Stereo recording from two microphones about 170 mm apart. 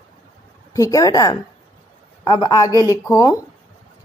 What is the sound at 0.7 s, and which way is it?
A woman's voice, 20° left (ahead or behind).